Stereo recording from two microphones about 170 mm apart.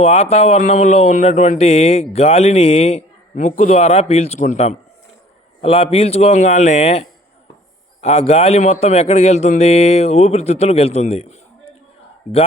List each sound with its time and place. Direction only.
0.0 s speech: 35° left (ahead or behind)
3.4 s speech: 50° left (ahead or behind)